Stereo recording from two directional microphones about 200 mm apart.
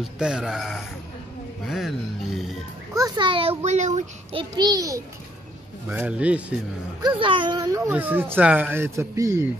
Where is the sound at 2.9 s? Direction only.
20° right (ahead or behind); by 4.4 s 35° right (ahead or behind).